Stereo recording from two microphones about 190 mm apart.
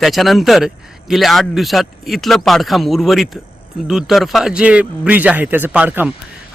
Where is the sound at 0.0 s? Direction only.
Centre (ahead or behind).